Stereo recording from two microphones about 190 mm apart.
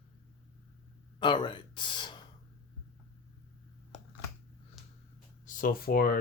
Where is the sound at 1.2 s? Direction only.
25° left (ahead or behind).